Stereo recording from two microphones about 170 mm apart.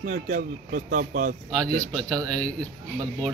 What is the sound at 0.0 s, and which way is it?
Speech, 50° right (ahead or behind).